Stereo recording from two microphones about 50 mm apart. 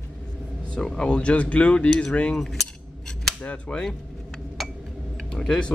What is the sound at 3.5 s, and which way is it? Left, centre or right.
Speech, left.